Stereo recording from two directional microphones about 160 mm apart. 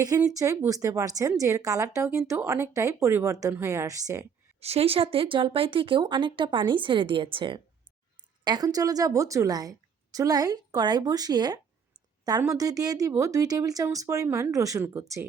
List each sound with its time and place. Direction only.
0.0 s a woman's voice: 20° right (ahead or behind)
4.6 s a woman's voice: 40° right (ahead or behind); by 15.3 s 20° right (ahead or behind)